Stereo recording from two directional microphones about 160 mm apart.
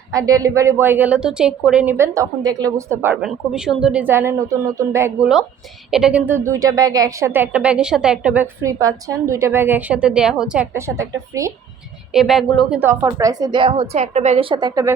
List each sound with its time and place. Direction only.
0.1 s a woman's voice: 20° right (ahead or behind)
5.9 s a woman's voice: 5° right (ahead or behind)
8.6 s a woman's voice: 20° right (ahead or behind); by 10.7 s 5° right (ahead or behind)
10.8 s a woman's voice: 20° right (ahead or behind)
12.1 s speech: centre (ahead or behind)
12.8 s a woman's voice: 15° right (ahead or behind)